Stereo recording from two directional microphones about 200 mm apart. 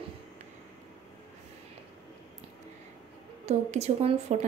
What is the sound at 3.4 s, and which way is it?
A woman's voice, 35° right (ahead or behind).